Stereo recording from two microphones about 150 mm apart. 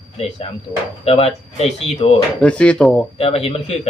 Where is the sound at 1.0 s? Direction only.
40° left (ahead or behind).